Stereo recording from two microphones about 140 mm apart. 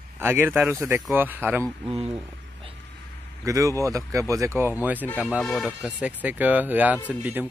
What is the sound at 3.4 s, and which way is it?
Speech, 25° right (ahead or behind).